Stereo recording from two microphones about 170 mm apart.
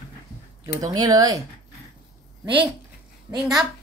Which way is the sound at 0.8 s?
20° right (ahead or behind).